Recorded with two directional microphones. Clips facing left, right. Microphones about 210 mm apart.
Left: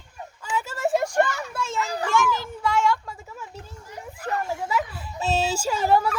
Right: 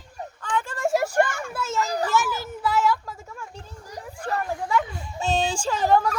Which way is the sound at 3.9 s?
35° right (ahead or behind).